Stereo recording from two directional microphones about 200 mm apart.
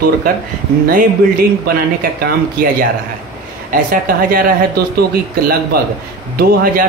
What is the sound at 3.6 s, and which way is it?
Speech, 45° right (ahead or behind).